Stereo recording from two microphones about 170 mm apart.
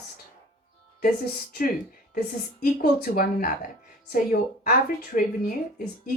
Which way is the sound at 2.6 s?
55° left (ahead or behind).